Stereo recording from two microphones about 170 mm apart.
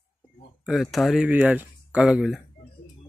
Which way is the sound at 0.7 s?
Centre (ahead or behind).